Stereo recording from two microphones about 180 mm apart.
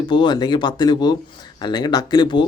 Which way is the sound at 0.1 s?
25° left (ahead or behind).